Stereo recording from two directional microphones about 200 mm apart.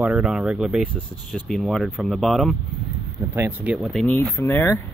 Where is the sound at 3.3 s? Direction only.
10° right (ahead or behind); by 4.8 s 10° left (ahead or behind).